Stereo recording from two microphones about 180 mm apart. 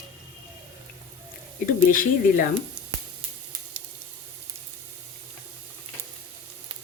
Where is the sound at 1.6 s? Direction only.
50° left (ahead or behind).